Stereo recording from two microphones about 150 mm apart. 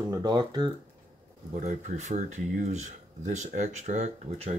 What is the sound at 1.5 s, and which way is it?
Speech, 50° right (ahead or behind).